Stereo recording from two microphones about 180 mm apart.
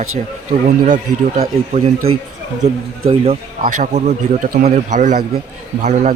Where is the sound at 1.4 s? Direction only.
35° right (ahead or behind).